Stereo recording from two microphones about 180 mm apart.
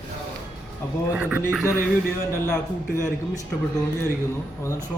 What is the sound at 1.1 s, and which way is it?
Speech, 5° right (ahead or behind).